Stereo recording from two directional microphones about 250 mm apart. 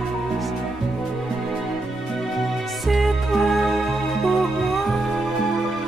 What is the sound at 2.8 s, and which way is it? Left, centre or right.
Music, centre.